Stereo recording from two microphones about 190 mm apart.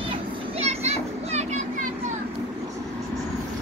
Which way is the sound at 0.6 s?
35° right (ahead or behind).